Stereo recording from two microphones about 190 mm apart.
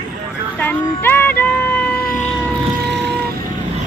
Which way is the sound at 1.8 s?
55° left (ahead or behind).